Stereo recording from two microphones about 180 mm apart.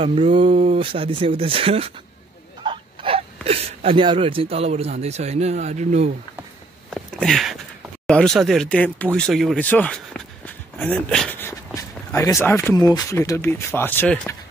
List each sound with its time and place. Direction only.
0.0 s speech: 30° right (ahead or behind)
2.6 s a sound: 30° right (ahead or behind)
3.4 s speech: 35° right (ahead or behind)
6.9 s speech: centre (ahead or behind)